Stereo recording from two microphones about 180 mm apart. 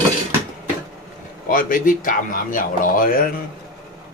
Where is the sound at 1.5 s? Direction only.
50° left (ahead or behind).